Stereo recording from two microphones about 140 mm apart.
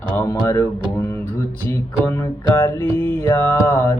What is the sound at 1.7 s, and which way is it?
Music, 20° left (ahead or behind).